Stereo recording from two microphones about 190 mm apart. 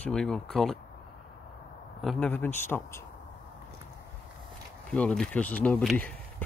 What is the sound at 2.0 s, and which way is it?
Speech, 5° left (ahead or behind).